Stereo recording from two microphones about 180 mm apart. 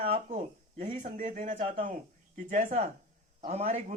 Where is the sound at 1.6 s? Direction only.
30° right (ahead or behind).